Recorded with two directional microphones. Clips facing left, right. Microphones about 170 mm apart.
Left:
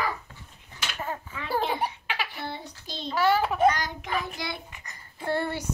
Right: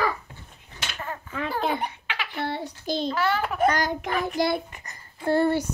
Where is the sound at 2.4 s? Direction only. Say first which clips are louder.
Right 7 dB; 70° right (ahead or behind).